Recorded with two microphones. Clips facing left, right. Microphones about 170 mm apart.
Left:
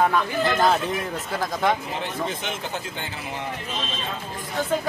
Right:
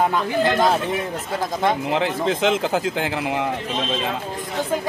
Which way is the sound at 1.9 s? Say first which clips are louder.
Right 8 dB; 90° right.